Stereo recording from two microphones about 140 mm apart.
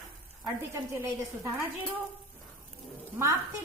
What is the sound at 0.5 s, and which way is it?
Speech, 20° right (ahead or behind).